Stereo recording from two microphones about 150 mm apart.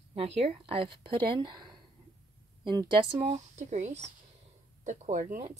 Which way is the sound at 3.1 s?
45° right (ahead or behind).